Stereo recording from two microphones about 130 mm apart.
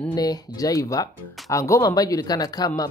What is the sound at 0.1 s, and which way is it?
Speech, 30° left (ahead or behind).